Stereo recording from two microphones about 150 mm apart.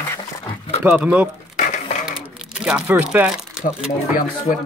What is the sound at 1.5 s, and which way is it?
Cash register, 55° left (ahead or behind).